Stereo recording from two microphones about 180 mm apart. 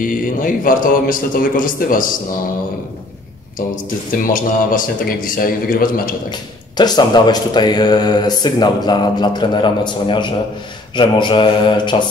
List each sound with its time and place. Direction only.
0.0 s a man's voice: 50° left (ahead or behind)
4.1 s a man's voice: 50° left (ahead or behind)
6.8 s speech: 25° left (ahead or behind)